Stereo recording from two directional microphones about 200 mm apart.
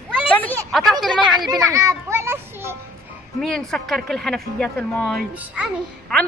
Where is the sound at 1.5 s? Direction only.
15° right (ahead or behind).